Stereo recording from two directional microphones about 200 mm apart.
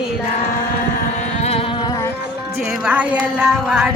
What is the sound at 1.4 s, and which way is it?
Music, 30° left (ahead or behind).